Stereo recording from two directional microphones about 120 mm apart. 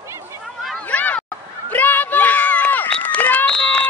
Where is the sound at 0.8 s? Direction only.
15° left (ahead or behind).